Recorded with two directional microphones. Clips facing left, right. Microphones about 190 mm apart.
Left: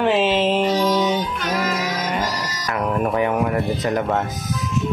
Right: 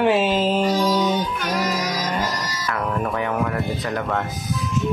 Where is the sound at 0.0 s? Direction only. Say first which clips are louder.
Left 1 dB; 5° right (ahead or behind).